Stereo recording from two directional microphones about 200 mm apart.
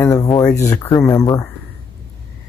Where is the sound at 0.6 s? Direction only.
20° left (ahead or behind).